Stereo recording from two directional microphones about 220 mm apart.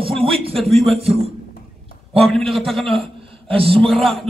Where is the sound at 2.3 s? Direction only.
Centre (ahead or behind).